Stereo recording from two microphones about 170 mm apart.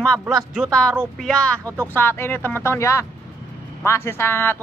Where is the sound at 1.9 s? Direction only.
10° left (ahead or behind).